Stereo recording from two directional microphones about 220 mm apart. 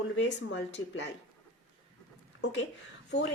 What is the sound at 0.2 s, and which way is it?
Speech, 55° left (ahead or behind).